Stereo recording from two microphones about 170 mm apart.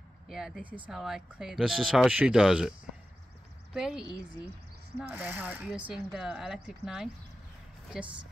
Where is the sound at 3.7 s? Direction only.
5° right (ahead or behind).